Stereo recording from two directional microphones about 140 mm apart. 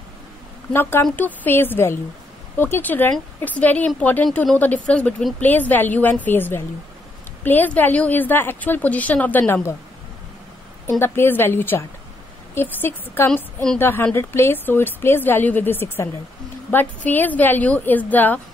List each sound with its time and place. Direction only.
0.7 s speech: 15° left (ahead or behind)
10.9 s speech: 15° left (ahead or behind)